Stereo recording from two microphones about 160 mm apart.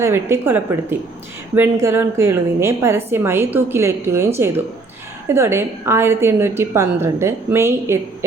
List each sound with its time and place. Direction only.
0.0 s a woman's voice: 15° right (ahead or behind)